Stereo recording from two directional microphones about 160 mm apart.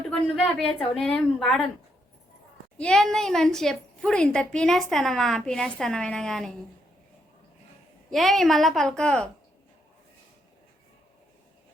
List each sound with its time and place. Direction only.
0.1 s a woman's voice: 5° left (ahead or behind)
2.7 s a woman's voice: 5° left (ahead or behind)
8.1 s a woman's voice: centre (ahead or behind)